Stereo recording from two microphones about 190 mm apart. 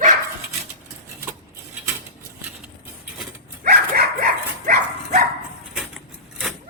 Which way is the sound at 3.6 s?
50° right (ahead or behind).